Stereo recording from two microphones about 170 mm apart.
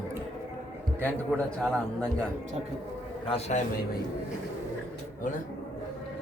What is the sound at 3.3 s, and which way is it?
Speech, 40° left (ahead or behind).